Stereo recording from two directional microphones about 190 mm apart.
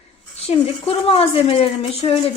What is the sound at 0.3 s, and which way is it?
A woman's voice, 30° left (ahead or behind).